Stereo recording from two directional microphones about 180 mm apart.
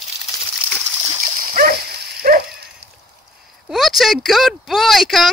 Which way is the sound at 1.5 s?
55° right (ahead or behind).